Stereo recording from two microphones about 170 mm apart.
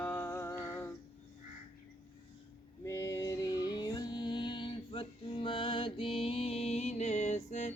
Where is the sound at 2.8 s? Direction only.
15° left (ahead or behind); by 7.7 s 45° left (ahead or behind).